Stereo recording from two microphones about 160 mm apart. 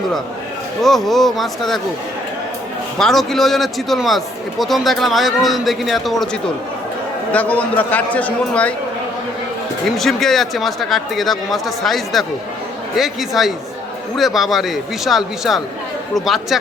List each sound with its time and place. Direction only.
0.8 s a man's voice: centre (ahead or behind)
3.0 s a man's voice: centre (ahead or behind)
7.3 s a man's voice: 10° left (ahead or behind)
10.0 s a man's voice: centre (ahead or behind)